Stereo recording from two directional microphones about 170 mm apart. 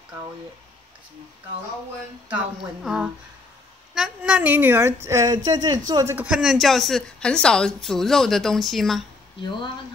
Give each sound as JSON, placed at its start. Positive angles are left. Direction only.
{"t": 2.2, "sound": "a woman's voice", "side_deg": -5}
{"t": 6.1, "sound": "a woman's voice", "side_deg": -5}